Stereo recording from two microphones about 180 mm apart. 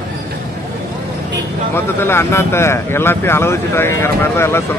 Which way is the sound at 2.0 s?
15° left (ahead or behind).